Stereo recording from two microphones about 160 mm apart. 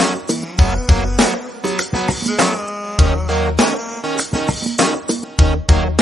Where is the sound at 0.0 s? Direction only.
Centre (ahead or behind).